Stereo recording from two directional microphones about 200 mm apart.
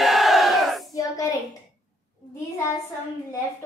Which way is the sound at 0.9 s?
15° left (ahead or behind).